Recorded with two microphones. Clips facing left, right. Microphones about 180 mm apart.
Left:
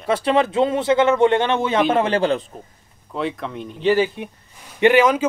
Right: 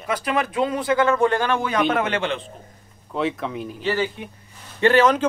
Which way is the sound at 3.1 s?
Centre (ahead or behind).